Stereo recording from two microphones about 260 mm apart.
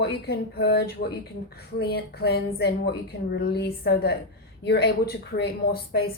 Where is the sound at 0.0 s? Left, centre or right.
Left.